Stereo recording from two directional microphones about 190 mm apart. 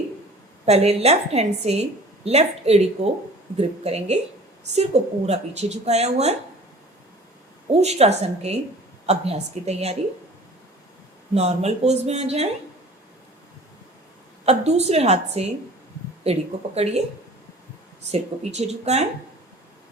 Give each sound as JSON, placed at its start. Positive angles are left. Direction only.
{"t": 0.6, "sound": "a woman's voice", "side_deg": -35}
{"t": 7.8, "sound": "a woman's voice", "side_deg": -35}
{"t": 11.3, "sound": "a woman's voice", "side_deg": -35}
{"t": 14.4, "sound": "a woman's voice", "side_deg": -35}
{"t": 18.1, "sound": "a woman's voice", "side_deg": -35}